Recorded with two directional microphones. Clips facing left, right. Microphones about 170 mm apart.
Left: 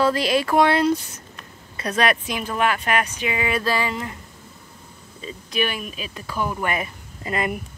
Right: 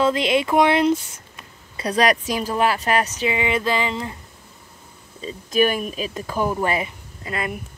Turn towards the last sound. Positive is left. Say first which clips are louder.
# left 2 dB
turn(degrees=0)  # may be behind; listen again after turning